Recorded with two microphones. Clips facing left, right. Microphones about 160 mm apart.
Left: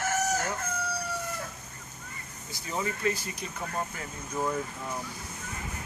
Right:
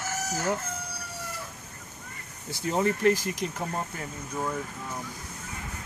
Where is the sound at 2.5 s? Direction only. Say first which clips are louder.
Right 7 dB; 60° right (ahead or behind).